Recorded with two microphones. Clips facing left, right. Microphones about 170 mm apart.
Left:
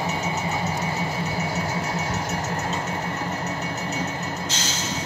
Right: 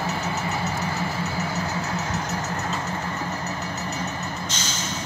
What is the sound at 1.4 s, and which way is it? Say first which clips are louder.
Music: left 1 dB; 25° left (ahead or behind).